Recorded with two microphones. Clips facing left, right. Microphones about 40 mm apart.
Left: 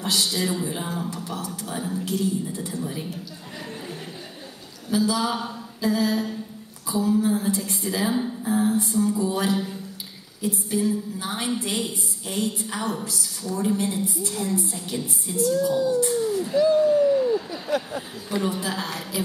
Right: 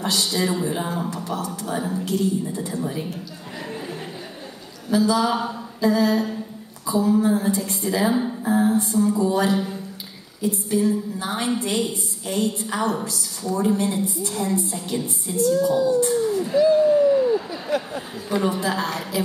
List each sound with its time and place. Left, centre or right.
0.0 s a woman's voice: centre
4.8 s a woman's voice: centre
16.3 s a woman's voice: centre
16.5 s speech: right
17.0 s a sound: centre
18.3 s a woman's voice: centre